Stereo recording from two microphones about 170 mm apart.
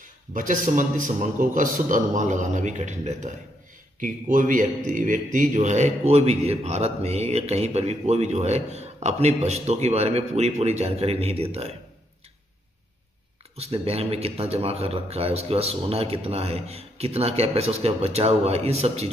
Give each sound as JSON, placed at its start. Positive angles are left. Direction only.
{"t": 0.3, "sound": "a man's voice", "side_deg": -50}
{"t": 13.6, "sound": "a man's voice", "side_deg": -35}